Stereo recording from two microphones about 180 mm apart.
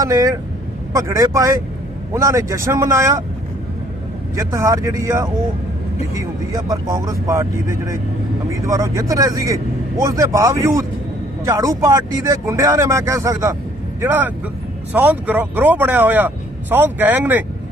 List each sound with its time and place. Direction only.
0.0 s speech: 20° right (ahead or behind)
4.4 s speech: 15° right (ahead or behind)